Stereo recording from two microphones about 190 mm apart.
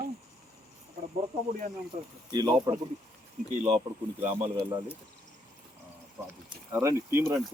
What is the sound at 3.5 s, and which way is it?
Speech, 35° right (ahead or behind).